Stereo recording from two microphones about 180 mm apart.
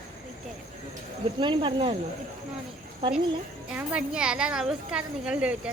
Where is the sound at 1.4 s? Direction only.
25° right (ahead or behind).